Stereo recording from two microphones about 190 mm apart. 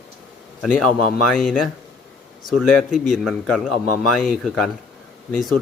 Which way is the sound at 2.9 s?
Centre (ahead or behind).